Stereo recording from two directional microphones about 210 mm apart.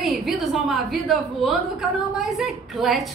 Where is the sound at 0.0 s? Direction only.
Centre (ahead or behind).